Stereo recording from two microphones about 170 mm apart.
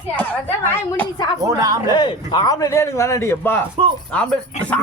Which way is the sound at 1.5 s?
20° right (ahead or behind).